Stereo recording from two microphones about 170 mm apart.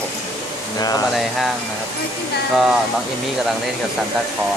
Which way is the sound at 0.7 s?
20° left (ahead or behind).